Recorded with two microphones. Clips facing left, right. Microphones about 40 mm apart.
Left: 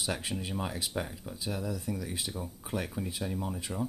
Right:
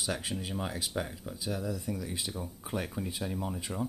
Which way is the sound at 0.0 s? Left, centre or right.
Centre.